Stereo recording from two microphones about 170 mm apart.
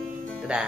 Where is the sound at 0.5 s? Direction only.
5° right (ahead or behind).